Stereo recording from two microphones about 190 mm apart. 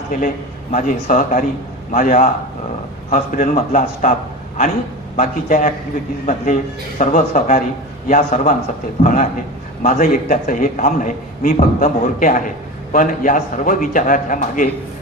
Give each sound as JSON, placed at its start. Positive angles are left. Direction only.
{"t": 0.7, "sound": "a man's voice", "side_deg": 45}
{"t": 5.1, "sound": "a man's voice", "side_deg": 40}